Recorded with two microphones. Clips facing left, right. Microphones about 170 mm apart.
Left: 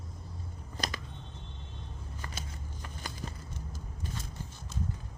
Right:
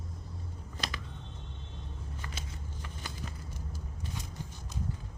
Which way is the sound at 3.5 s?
10° right (ahead or behind).